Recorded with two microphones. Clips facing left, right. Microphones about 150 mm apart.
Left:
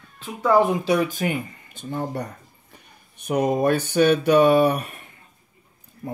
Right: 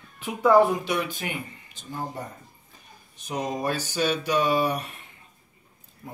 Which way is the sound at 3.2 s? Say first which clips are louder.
Left 8 dB; 60° left (ahead or behind).